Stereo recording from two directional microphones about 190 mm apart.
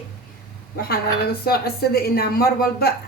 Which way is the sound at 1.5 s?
55° left (ahead or behind).